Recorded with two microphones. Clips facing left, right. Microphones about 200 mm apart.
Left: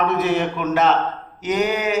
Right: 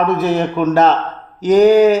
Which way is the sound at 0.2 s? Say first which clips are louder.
Right 4 dB; 35° right (ahead or behind).